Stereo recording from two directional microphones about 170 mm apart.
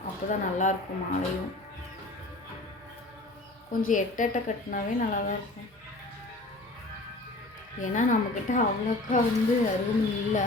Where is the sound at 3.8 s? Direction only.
50° left (ahead or behind).